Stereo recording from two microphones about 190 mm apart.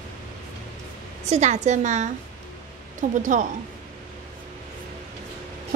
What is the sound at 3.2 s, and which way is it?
Speech, 40° right (ahead or behind).